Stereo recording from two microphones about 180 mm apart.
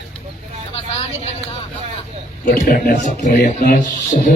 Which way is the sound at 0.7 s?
35° left (ahead or behind).